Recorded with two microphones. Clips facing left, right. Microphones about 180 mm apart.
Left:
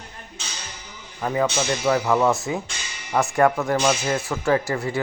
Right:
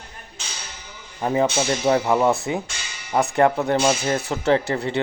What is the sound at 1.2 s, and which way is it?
Speech, 25° right (ahead or behind).